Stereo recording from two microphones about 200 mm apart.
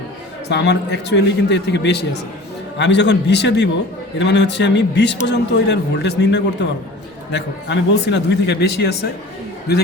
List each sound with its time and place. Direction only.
0.4 s speech: 60° left (ahead or behind)